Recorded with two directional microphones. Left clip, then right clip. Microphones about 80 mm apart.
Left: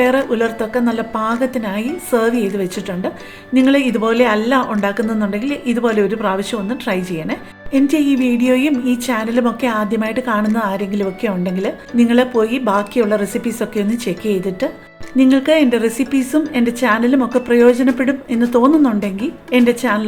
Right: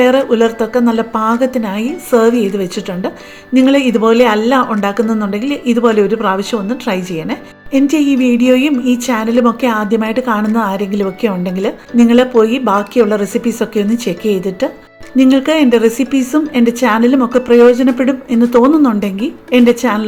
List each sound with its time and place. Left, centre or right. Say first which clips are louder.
0.0 s a woman's voice: right 5 dB; right